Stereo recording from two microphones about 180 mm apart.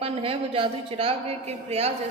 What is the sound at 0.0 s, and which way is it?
A woman's voice, 30° right (ahead or behind).